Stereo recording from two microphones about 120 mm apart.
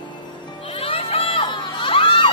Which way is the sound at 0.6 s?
55° left (ahead or behind).